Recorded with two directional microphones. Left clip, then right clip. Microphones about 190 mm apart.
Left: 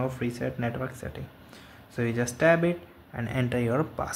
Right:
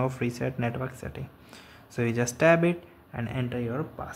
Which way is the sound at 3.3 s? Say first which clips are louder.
Left 5 dB; 5° left (ahead or behind).